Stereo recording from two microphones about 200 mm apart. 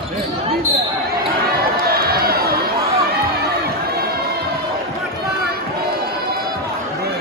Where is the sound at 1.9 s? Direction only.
50° right (ahead or behind).